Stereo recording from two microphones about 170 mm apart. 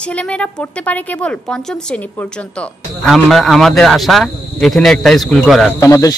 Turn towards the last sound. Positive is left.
turn(degrees=20)  # may be behind; listen again after turning